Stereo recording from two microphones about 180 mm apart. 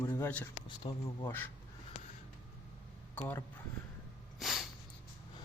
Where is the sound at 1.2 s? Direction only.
10° left (ahead or behind).